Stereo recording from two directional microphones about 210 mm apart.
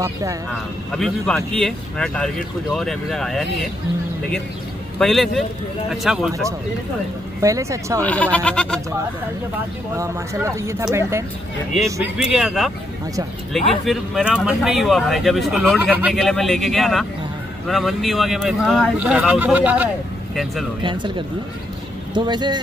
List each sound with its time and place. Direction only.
0.0 s speech: 15° right (ahead or behind)
0.9 s speech: 5° left (ahead or behind)
4.9 s speech: centre (ahead or behind)
7.4 s speech: 15° right (ahead or behind)
8.0 s speech: 5° left (ahead or behind)
9.9 s speech: 15° right (ahead or behind)
11.7 s speech: centre (ahead or behind)
20.8 s speech: 20° right (ahead or behind)
22.1 s speech: 20° right (ahead or behind)